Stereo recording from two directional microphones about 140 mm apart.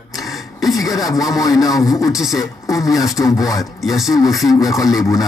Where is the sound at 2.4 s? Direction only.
25° left (ahead or behind).